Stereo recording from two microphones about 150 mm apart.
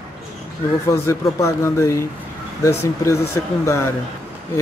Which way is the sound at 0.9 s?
20° left (ahead or behind).